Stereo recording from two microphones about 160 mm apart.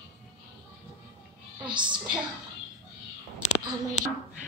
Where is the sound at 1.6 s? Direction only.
30° right (ahead or behind).